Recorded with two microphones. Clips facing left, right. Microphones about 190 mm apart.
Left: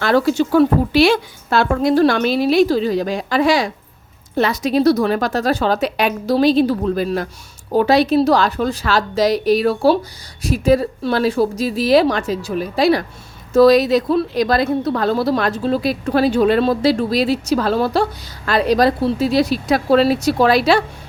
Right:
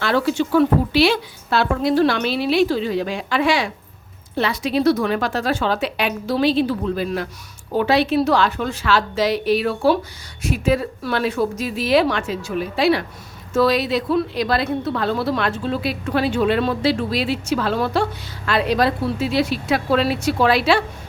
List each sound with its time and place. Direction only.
0.0 s a woman's voice: 45° left (ahead or behind)